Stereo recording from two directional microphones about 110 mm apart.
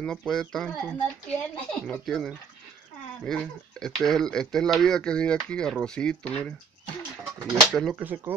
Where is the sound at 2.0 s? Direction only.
Centre (ahead or behind).